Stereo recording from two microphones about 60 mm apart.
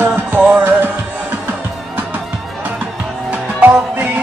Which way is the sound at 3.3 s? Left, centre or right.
Right.